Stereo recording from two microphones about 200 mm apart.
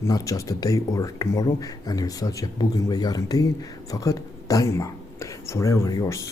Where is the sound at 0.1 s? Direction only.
15° left (ahead or behind).